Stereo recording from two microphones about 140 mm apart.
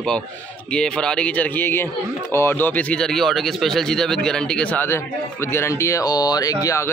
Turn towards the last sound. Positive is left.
turn(degrees=25)  # may be behind; listen again after turning